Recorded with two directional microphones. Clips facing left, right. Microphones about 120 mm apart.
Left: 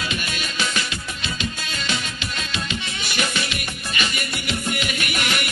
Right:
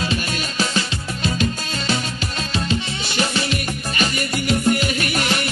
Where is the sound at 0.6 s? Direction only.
40° right (ahead or behind).